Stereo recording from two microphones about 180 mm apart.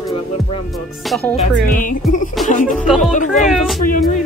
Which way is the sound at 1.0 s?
Centre (ahead or behind).